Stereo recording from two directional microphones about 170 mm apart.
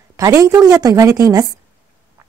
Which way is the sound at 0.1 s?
20° right (ahead or behind).